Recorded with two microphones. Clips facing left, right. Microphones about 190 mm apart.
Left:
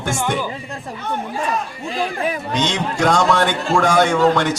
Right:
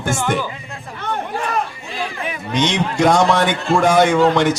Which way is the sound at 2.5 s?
10° right (ahead or behind).